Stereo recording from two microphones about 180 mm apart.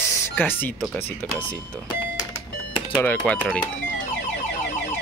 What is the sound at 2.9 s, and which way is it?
Speech, 10° left (ahead or behind).